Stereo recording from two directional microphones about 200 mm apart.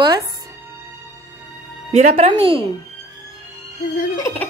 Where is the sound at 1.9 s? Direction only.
35° right (ahead or behind).